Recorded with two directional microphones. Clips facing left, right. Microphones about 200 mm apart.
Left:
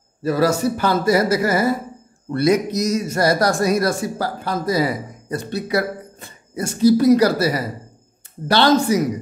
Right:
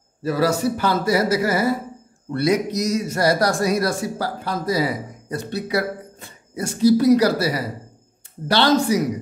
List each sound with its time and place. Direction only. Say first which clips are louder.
0.2 s a man's voice: left 2 dB; 45° left (ahead or behind)